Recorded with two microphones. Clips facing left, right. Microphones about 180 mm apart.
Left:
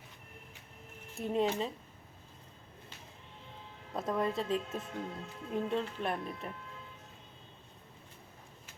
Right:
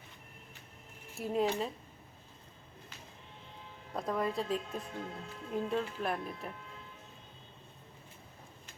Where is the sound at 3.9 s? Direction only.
Centre (ahead or behind).